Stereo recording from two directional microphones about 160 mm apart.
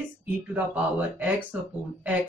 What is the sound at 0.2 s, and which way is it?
Speech, 10° right (ahead or behind).